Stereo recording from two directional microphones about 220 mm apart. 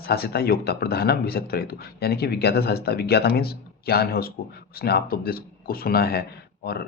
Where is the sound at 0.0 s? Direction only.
45° left (ahead or behind).